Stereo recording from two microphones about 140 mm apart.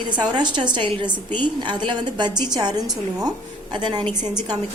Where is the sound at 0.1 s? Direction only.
30° right (ahead or behind).